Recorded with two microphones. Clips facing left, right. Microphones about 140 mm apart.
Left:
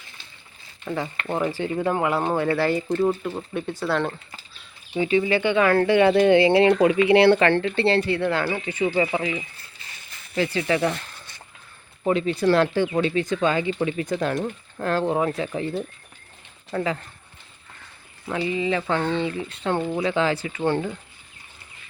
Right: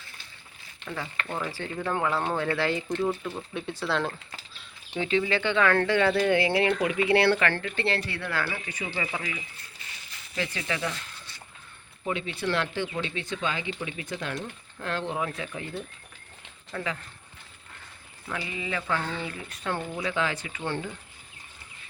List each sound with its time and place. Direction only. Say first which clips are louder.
0.9 s speech: left 7 dB; 30° left (ahead or behind)
1.4 s speech: left 10 dB; 15° left (ahead or behind)
3.8 s speech: left 3 dB; centre (ahead or behind); by 10.6 s 30° left (ahead or behind)
10.8 s a sound: left 9 dB; 60° left (ahead or behind)
12.0 s speech: left 10 dB; 40° left (ahead or behind)
18.3 s speech: left 10 dB; 25° left (ahead or behind)